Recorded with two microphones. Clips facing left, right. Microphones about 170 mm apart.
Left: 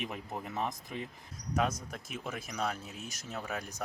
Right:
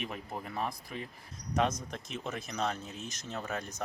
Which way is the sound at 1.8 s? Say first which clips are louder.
Right 2 dB; 5° left (ahead or behind).